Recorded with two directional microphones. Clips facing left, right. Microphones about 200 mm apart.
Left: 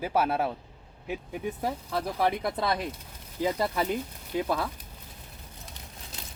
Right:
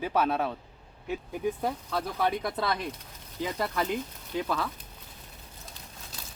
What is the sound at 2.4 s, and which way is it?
Speech, 25° left (ahead or behind).